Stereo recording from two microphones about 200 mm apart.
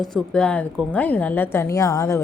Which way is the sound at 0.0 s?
Centre (ahead or behind).